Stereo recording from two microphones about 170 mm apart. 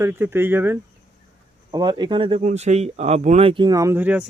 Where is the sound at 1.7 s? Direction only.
25° right (ahead or behind).